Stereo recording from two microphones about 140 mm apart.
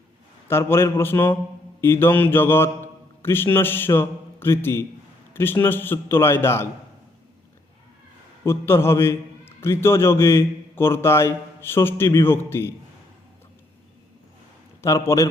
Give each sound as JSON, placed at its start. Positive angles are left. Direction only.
{"t": 0.4, "sound": "a man's voice", "side_deg": 15}
{"t": 8.4, "sound": "a man's voice", "side_deg": 20}
{"t": 14.8, "sound": "a man's voice", "side_deg": 20}